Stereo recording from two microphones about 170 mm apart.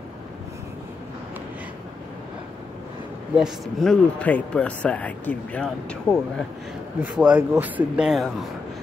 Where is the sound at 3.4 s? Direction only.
5° left (ahead or behind).